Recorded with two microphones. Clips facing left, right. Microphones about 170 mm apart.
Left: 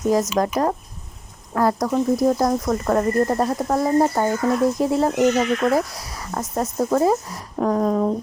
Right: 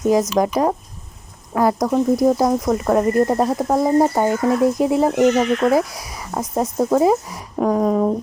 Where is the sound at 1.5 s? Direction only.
15° right (ahead or behind).